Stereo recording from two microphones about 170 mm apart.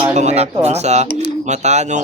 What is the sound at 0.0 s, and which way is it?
A man's voice, 40° right (ahead or behind).